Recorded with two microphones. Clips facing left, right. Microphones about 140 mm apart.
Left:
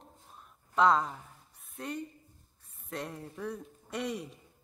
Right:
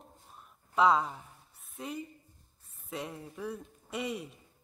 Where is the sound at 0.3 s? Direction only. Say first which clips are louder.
Even; 5° right (ahead or behind).